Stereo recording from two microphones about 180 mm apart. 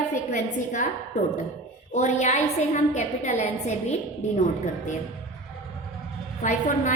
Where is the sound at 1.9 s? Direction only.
40° left (ahead or behind).